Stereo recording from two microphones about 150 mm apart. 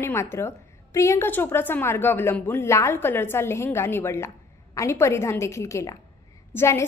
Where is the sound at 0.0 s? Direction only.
15° left (ahead or behind).